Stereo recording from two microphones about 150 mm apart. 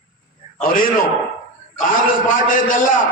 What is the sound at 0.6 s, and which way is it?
A man's voice, 65° left (ahead or behind).